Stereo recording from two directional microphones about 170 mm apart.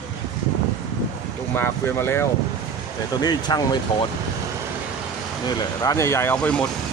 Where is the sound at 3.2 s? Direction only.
25° left (ahead or behind).